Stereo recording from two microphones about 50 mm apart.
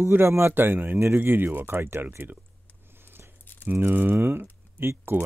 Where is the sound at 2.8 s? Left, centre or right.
Right.